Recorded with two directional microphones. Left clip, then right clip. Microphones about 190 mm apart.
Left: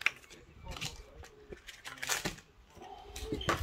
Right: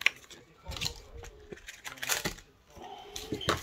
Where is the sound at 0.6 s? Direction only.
15° right (ahead or behind).